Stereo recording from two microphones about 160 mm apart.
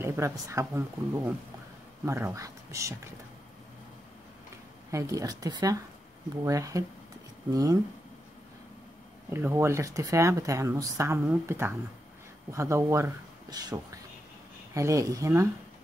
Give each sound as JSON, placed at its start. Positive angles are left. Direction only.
{"t": 0.0, "sound": "speech", "side_deg": -15}
{"t": 4.9, "sound": "speech", "side_deg": -20}
{"t": 9.3, "sound": "speech", "side_deg": -15}